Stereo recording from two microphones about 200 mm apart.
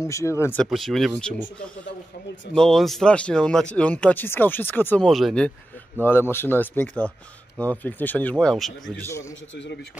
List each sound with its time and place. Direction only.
0.0 s speech: 15° left (ahead or behind)
0.7 s speech: centre (ahead or behind)
9.0 s speech: 15° left (ahead or behind)
9.5 s a man's voice: 60° left (ahead or behind)